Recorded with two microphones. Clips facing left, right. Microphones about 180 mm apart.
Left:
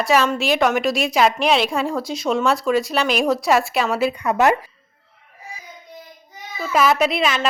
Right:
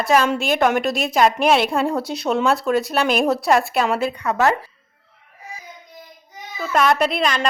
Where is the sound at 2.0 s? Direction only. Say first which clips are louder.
Even; 65° right (ahead or behind).